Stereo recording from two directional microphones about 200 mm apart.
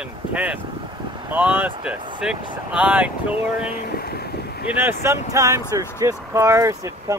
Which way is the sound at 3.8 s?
50° left (ahead or behind).